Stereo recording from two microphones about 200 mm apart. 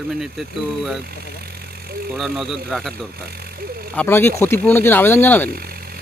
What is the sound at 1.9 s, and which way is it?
Vehicle, 50° right (ahead or behind).